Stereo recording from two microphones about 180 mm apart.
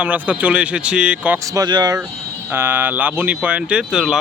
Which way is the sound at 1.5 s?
25° right (ahead or behind).